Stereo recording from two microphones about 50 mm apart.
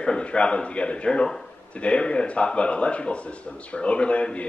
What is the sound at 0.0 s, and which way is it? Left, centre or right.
A man's voice, centre.